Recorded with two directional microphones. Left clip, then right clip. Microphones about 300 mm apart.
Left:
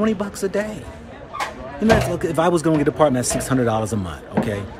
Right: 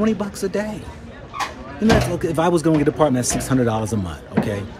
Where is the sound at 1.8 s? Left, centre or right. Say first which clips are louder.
Left 1 dB; centre.